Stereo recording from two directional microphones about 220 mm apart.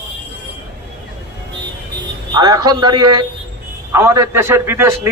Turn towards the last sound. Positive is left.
turn(degrees=-10)  # may be behind; listen again after turning